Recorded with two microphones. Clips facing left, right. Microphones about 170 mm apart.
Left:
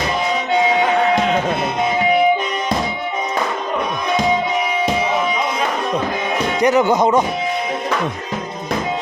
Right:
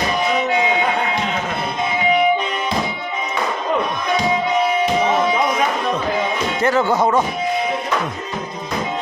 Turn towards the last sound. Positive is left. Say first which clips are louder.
# left 2 dB
turn(degrees=20)  # may be behind; listen again after turning